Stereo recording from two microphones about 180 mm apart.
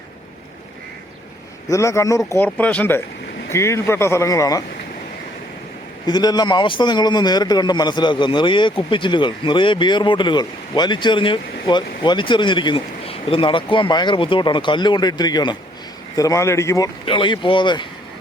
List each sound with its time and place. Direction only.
1.6 s speech: 15° left (ahead or behind)
6.1 s a man's voice: 20° left (ahead or behind)